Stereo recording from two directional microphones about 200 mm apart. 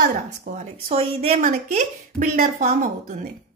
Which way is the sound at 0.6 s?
35° right (ahead or behind).